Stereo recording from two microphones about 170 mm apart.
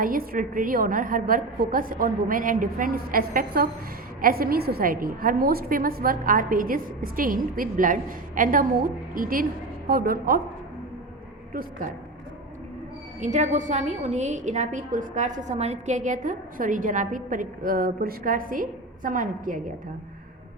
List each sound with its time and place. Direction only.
0.0 s a woman's voice: 55° right (ahead or behind)
13.1 s a woman's voice: 45° right (ahead or behind)